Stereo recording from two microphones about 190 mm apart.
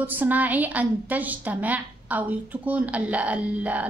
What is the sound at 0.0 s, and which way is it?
A woman's voice, 10° right (ahead or behind).